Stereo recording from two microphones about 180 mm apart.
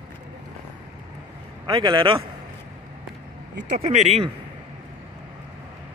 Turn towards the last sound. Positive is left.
turn(degrees=-35)  # may be behind; listen again after turning